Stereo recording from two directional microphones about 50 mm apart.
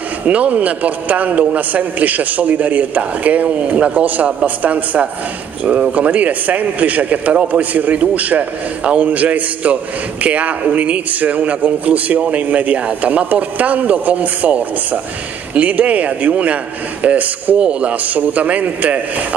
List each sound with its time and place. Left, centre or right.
0.3 s a man's voice: right